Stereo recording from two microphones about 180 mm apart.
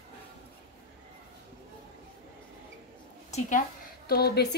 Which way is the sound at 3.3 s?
45° left (ahead or behind).